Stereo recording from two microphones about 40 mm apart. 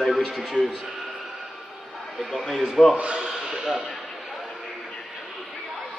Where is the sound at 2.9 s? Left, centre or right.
Right.